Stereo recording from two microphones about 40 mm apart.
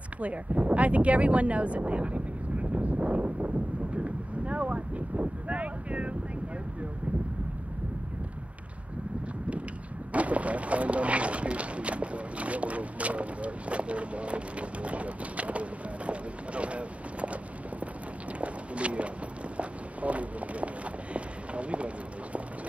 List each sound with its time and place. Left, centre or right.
0.2 s speech: right
10.1 s speech: right
18.4 s a sound: right
19.5 s run: right